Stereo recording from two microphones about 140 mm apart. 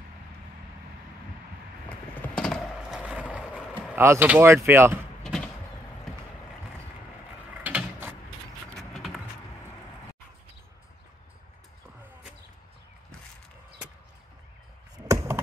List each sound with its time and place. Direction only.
1.9 s clip-clop: 10° left (ahead or behind)
3.0 s boat: 10° right (ahead or behind)
3.9 s speech: 15° right (ahead or behind)
5.2 s vehicle: 5° left (ahead or behind)
7.5 s mechanisms: 10° right (ahead or behind)
8.7 s a sound: centre (ahead or behind)
15.0 s chop: 15° right (ahead or behind)